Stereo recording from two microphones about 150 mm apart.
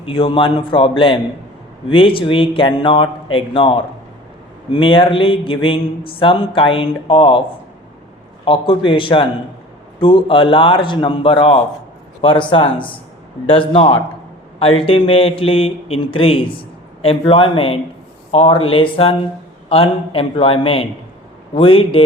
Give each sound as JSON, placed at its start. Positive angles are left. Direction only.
{"t": 0.0, "sound": "speech", "side_deg": 35}
{"t": 8.4, "sound": "speech", "side_deg": 35}